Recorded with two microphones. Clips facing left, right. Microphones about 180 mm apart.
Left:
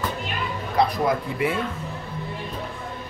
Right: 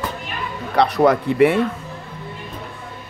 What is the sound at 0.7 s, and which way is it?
Speech, 75° right (ahead or behind).